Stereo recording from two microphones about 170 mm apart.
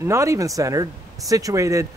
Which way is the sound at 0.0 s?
15° right (ahead or behind).